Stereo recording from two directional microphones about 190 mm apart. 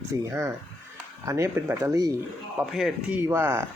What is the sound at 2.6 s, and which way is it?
Speech, centre (ahead or behind).